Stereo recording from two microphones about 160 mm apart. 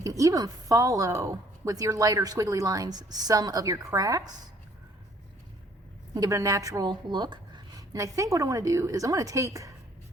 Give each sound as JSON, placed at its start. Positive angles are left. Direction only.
{"t": 0.0, "sound": "a woman's voice", "side_deg": -20}
{"t": 6.1, "sound": "a woman's voice", "side_deg": -20}